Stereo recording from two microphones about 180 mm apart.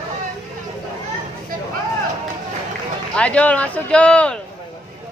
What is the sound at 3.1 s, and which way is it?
Speech, 5° left (ahead or behind).